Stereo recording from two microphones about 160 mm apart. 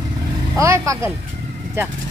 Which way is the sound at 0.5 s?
20° right (ahead or behind).